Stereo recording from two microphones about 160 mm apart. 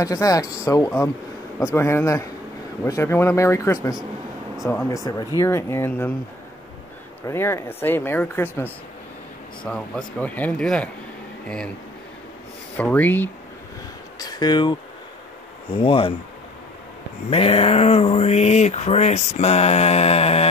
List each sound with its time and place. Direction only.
0.0 s speech: 20° left (ahead or behind)
7.2 s speech: 15° left (ahead or behind)
12.7 s speech: 10° left (ahead or behind)
14.1 s speech: 25° left (ahead or behind)
17.3 s speech: 40° left (ahead or behind)